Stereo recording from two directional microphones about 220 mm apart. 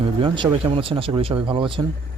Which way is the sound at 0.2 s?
20° right (ahead or behind).